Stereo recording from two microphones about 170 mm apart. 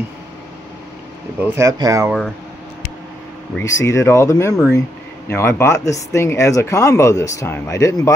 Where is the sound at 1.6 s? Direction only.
20° right (ahead or behind).